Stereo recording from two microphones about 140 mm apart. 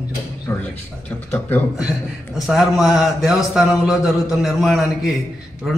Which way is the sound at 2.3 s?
Centre (ahead or behind).